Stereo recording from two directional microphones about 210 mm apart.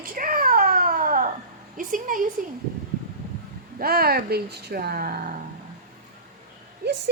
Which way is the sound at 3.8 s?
45° right (ahead or behind).